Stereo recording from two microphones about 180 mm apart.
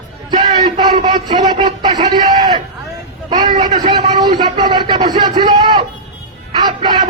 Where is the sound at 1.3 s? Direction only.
25° right (ahead or behind).